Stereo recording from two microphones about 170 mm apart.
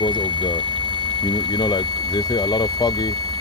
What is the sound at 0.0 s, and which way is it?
Speech, 25° left (ahead or behind).